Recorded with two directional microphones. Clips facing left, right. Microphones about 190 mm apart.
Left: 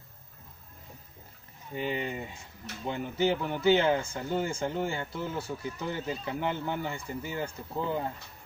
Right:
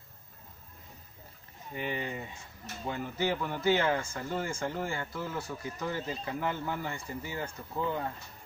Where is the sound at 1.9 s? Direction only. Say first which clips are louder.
Left 3 dB; 25° left (ahead or behind).